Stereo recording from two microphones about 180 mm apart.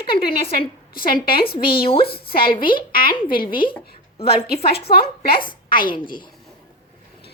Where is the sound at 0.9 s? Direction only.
55° left (ahead or behind).